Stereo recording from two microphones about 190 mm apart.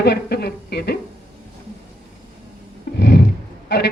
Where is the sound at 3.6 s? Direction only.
60° left (ahead or behind).